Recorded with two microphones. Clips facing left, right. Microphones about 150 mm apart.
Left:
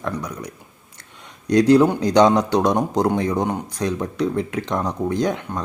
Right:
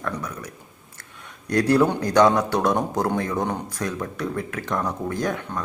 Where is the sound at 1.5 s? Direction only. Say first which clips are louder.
Left 5 dB; 15° left (ahead or behind).